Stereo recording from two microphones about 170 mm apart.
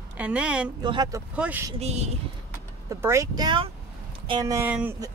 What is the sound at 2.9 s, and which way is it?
Speech, 15° right (ahead or behind).